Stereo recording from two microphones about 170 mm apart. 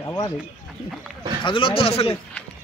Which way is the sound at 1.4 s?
30° left (ahead or behind).